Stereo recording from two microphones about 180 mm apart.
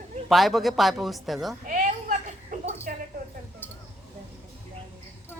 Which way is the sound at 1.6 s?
50° right (ahead or behind).